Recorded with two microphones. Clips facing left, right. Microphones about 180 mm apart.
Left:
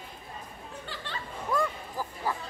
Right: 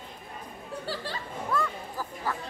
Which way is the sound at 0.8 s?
35° right (ahead or behind).